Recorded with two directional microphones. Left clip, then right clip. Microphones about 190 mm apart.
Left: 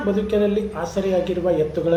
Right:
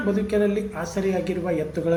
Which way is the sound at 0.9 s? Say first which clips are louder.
Left 4 dB; 45° right (ahead or behind).